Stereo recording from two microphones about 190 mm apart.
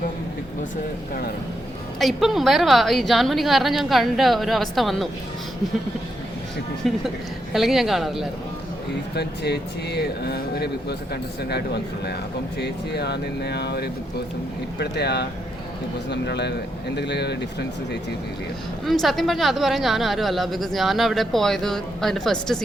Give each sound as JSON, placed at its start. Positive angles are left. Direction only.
{"t": 2.0, "sound": "speech", "side_deg": 0}
{"t": 6.8, "sound": "speech", "side_deg": 0}
{"t": 9.1, "sound": "speech", "side_deg": 60}
{"t": 18.9, "sound": "speech", "side_deg": 0}